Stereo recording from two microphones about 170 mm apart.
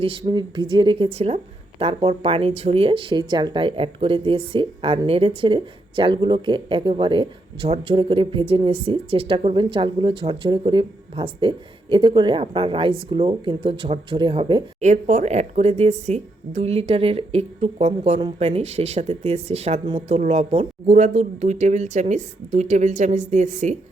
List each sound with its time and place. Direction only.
0.0 s speech: 30° right (ahead or behind)
14.8 s speech: 45° right (ahead or behind)